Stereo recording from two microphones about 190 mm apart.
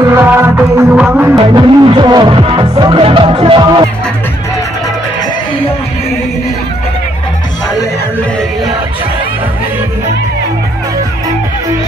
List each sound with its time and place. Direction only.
0.0 s music: 10° right (ahead or behind)
1.4 s music: 25° right (ahead or behind)